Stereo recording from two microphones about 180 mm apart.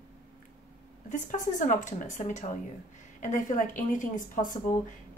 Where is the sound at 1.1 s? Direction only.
45° left (ahead or behind).